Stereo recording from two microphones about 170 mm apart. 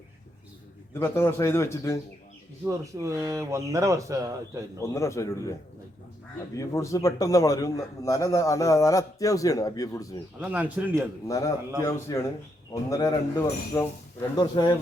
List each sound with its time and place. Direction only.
0.9 s a man's voice: 15° left (ahead or behind)
2.6 s speech: 15° right (ahead or behind)
4.8 s a man's voice: 15° left (ahead or behind)
6.6 s a man's voice: 20° left (ahead or behind)
10.4 s speech: 10° right (ahead or behind)
11.3 s a man's voice: 20° left (ahead or behind)